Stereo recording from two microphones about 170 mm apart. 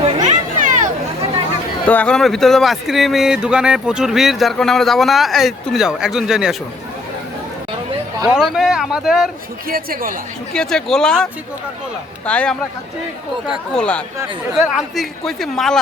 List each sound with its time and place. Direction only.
0.0 s a sound: 45° right (ahead or behind)
1.9 s speech: 5° left (ahead or behind)
8.3 s speech: 5° right (ahead or behind)
9.6 s speech: 60° right (ahead or behind)
10.5 s speech: 5° left (ahead or behind)